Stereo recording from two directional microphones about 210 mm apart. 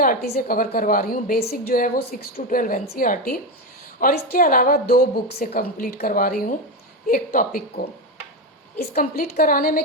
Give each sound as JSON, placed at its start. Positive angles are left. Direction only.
{"t": 0.0, "sound": "a woman's voice", "side_deg": 45}
{"t": 8.9, "sound": "a woman's voice", "side_deg": 35}